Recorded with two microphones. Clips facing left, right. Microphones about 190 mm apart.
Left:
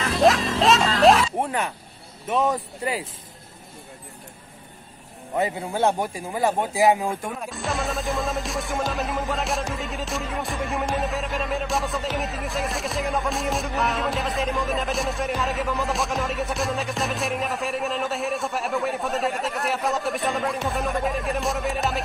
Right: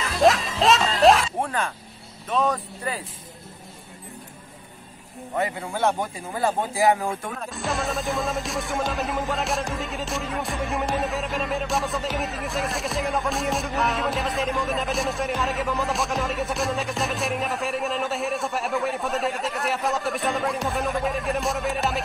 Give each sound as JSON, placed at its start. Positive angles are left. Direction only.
{"t": 0.0, "sound": "music", "side_deg": 0}
{"t": 1.4, "sound": "a sound", "side_deg": 15}
{"t": 2.2, "sound": "a man's voice", "side_deg": 20}
{"t": 5.3, "sound": "a man's voice", "side_deg": 20}
{"t": 7.4, "sound": "music", "side_deg": 0}